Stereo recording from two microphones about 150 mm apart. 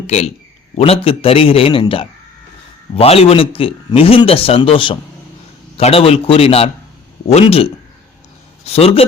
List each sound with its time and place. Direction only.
0.8 s a man's voice: 40° left (ahead or behind)